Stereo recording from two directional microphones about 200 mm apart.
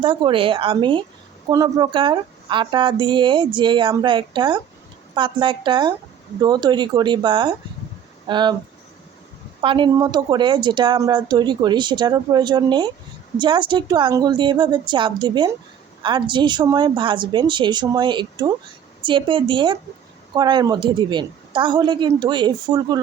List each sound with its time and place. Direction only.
0.0 s a woman's voice: 25° right (ahead or behind)
9.6 s a woman's voice: 25° right (ahead or behind)